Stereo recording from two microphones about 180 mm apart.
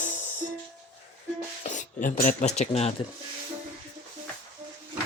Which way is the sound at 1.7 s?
45° left (ahead or behind).